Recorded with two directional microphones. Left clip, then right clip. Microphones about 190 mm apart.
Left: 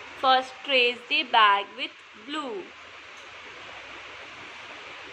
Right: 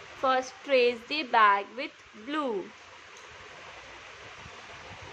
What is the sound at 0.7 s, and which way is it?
A woman's voice, 40° right (ahead or behind).